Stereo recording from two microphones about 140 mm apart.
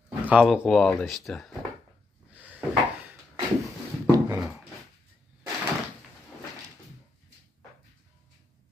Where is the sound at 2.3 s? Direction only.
10° right (ahead or behind).